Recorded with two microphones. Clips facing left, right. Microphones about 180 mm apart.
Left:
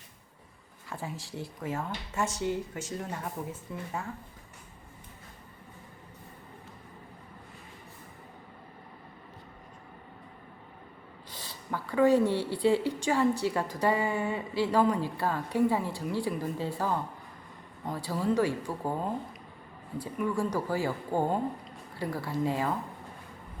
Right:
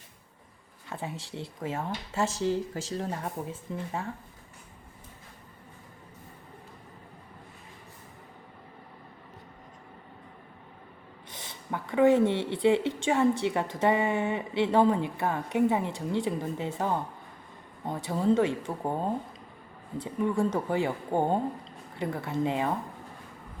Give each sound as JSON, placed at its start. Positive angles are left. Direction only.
{"t": 0.9, "sound": "a woman's voice", "side_deg": -25}
{"t": 11.3, "sound": "a woman's voice", "side_deg": -20}